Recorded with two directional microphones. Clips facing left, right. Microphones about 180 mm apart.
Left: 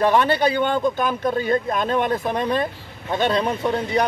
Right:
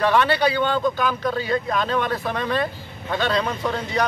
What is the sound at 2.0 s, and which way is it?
Speech, 20° left (ahead or behind).